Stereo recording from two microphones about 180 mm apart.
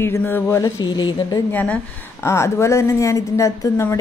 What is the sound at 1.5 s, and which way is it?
Speech, 10° left (ahead or behind).